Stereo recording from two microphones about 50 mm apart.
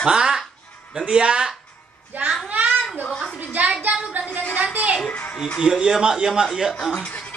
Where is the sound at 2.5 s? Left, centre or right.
Right.